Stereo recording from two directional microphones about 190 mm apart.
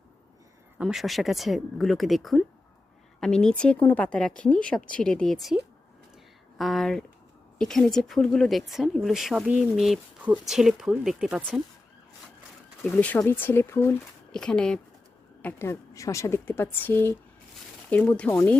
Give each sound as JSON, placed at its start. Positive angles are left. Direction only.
{"t": 0.8, "sound": "speech", "side_deg": 0}
{"t": 6.6, "sound": "speech", "side_deg": 0}
{"t": 12.8, "sound": "a woman's voice", "side_deg": 10}